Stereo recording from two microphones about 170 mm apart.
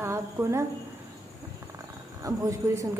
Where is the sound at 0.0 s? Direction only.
15° right (ahead or behind).